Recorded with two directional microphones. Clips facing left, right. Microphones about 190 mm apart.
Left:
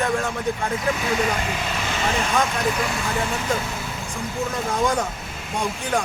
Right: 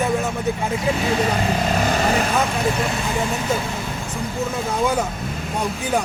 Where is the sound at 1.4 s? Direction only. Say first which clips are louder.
Right 7 dB; 40° right (ahead or behind).